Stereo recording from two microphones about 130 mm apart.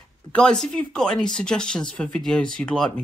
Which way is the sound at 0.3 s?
5° left (ahead or behind).